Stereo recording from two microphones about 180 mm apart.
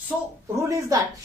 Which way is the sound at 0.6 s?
20° right (ahead or behind).